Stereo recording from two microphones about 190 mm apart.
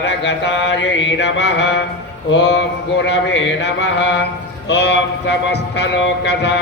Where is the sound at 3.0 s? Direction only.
70° left (ahead or behind).